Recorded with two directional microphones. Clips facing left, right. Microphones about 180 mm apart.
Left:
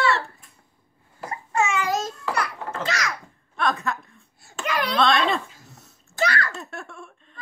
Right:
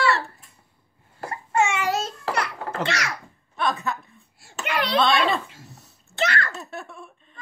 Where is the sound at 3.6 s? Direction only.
Centre (ahead or behind).